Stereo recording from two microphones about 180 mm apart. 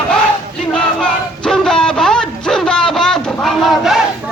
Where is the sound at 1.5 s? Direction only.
5° left (ahead or behind).